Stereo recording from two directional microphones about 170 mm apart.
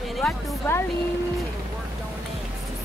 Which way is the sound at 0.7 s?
15° left (ahead or behind).